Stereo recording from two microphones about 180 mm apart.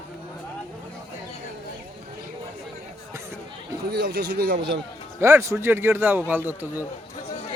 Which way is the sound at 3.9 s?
65° right (ahead or behind).